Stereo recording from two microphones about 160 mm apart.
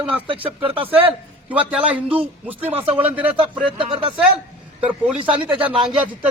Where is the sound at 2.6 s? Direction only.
40° right (ahead or behind).